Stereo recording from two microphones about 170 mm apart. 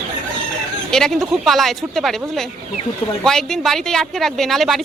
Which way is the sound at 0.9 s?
5° left (ahead or behind).